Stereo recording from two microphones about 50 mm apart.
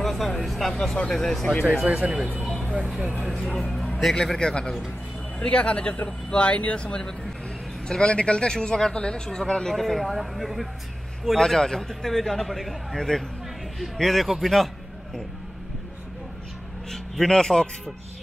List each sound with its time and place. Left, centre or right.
0.0 s a man's voice: centre
2.0 s speech: centre
4.1 s a man's voice: centre
11.3 s a man's voice: centre
16.9 s a man's voice: centre